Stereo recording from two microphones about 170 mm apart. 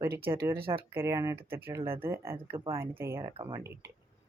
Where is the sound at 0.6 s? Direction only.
30° right (ahead or behind).